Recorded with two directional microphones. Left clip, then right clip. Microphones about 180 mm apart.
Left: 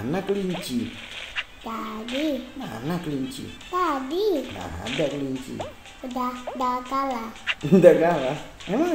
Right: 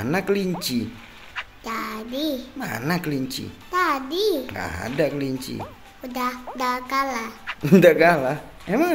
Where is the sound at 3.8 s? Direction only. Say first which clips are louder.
Right 2 dB; 15° left (ahead or behind).